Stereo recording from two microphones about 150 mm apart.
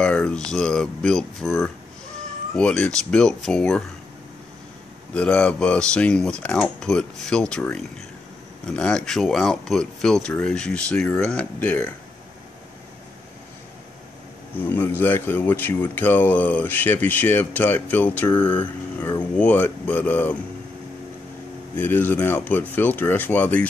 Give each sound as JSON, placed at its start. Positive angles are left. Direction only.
{"t": 0.0, "sound": "speech", "side_deg": 5}
{"t": 5.1, "sound": "speech", "side_deg": 5}
{"t": 14.6, "sound": "speech", "side_deg": 15}
{"t": 21.7, "sound": "speech", "side_deg": 10}